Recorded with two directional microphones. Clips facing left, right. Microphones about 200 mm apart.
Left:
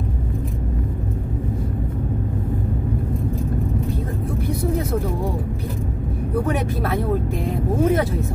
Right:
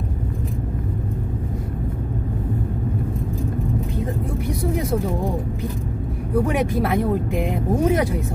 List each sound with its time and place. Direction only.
6.4 s speech: 15° right (ahead or behind)